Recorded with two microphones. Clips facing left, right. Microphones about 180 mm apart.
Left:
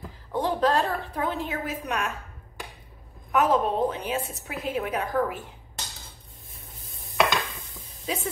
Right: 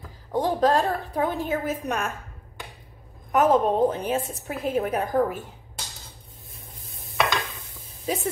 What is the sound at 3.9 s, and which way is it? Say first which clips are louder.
Stir: right 3 dB; 45° right (ahead or behind).